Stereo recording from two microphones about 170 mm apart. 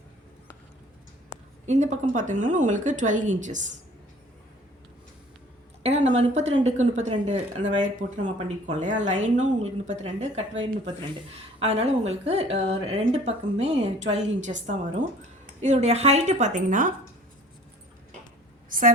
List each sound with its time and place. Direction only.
1.6 s speech: 45° right (ahead or behind)
5.8 s a woman's voice: 40° right (ahead or behind)
11.6 s a woman's voice: 40° right (ahead or behind)
18.7 s a sound: 55° right (ahead or behind)